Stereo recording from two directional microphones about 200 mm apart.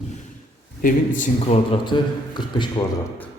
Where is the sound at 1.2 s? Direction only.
30° left (ahead or behind).